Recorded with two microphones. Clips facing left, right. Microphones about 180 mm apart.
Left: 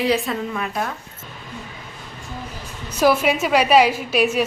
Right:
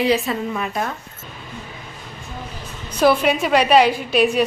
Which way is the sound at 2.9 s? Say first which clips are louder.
Right 1 dB; 5° left (ahead or behind).